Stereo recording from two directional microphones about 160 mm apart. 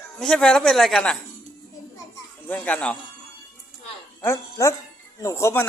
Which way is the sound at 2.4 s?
10° left (ahead or behind).